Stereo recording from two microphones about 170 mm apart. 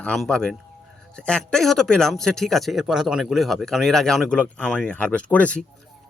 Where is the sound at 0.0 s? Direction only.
Centre (ahead or behind).